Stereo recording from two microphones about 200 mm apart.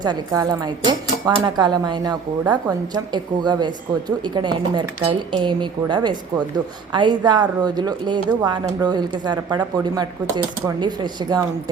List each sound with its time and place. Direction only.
0.0 s speech: 20° right (ahead or behind)